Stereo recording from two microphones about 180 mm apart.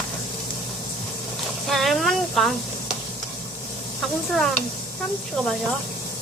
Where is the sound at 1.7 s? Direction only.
Centre (ahead or behind).